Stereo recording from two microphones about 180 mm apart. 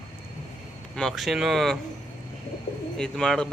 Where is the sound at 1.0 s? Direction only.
Centre (ahead or behind).